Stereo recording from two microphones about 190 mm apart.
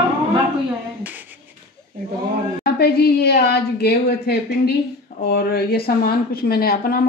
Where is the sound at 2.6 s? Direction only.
55° left (ahead or behind).